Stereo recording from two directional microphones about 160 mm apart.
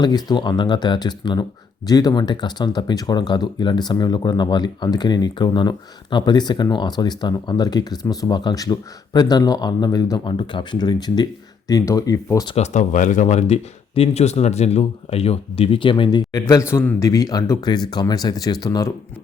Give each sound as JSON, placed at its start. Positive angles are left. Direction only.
{"t": 0.0, "sound": "speech", "side_deg": 25}
{"t": 12.5, "sound": "speech", "side_deg": 50}